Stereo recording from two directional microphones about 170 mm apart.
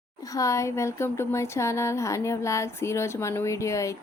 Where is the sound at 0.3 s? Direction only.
20° left (ahead or behind).